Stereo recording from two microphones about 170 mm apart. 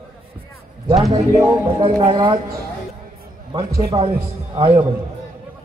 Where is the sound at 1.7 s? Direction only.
25° right (ahead or behind).